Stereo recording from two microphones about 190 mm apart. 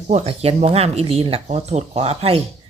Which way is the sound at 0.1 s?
35° right (ahead or behind).